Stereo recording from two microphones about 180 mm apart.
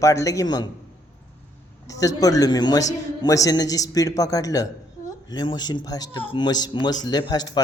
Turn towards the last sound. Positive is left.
turn(degrees=20)  # may be behind; listen again after turning